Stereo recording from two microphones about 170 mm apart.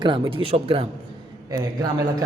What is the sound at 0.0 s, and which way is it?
Speech, 30° right (ahead or behind).